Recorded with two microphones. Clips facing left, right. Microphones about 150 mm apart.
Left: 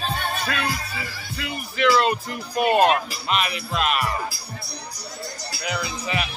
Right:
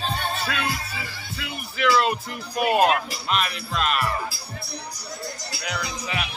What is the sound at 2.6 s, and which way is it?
Speech, 5° right (ahead or behind).